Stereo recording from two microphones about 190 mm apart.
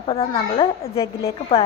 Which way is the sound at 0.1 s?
30° left (ahead or behind).